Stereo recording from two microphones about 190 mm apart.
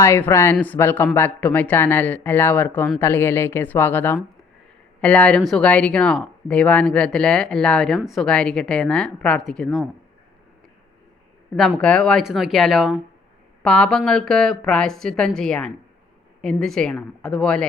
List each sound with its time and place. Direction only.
0.0 s speech: 15° left (ahead or behind)
11.5 s speech: 5° left (ahead or behind)